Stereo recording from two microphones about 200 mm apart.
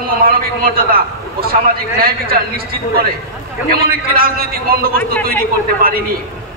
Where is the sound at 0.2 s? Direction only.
45° right (ahead or behind).